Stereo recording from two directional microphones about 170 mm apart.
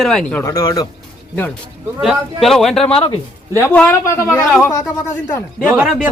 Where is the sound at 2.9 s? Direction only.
30° left (ahead or behind).